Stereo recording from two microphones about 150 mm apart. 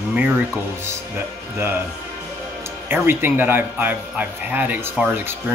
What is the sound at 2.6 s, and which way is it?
Speech, 15° right (ahead or behind).